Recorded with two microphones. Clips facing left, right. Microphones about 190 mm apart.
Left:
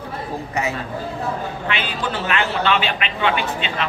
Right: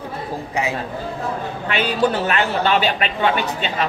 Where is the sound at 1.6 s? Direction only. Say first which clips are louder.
Right 10 dB; 45° right (ahead or behind).